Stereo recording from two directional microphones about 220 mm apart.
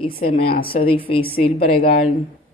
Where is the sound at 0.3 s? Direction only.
25° left (ahead or behind).